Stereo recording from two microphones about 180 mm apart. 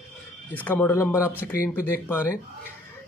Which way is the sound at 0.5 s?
10° left (ahead or behind).